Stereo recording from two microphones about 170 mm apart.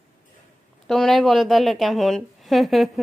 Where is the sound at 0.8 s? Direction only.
Centre (ahead or behind).